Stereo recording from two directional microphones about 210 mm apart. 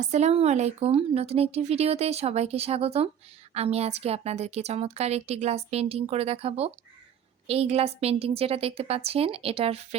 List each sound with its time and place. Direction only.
0.0 s a woman's voice: 30° right (ahead or behind)